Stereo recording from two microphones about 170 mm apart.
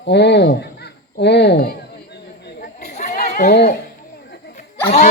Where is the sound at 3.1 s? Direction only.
65° left (ahead or behind).